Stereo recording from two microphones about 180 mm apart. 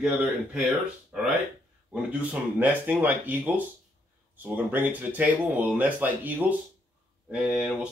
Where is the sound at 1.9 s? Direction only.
5° right (ahead or behind).